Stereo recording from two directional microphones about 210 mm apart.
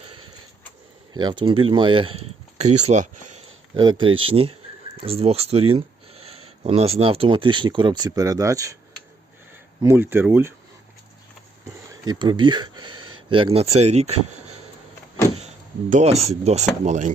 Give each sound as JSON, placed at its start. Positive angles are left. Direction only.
{"t": 1.1, "sound": "speech", "side_deg": -20}
{"t": 3.8, "sound": "speech", "side_deg": -20}
{"t": 9.8, "sound": "speech", "side_deg": -10}
{"t": 11.9, "sound": "speech", "side_deg": -20}
{"t": 15.4, "sound": "speech", "side_deg": -35}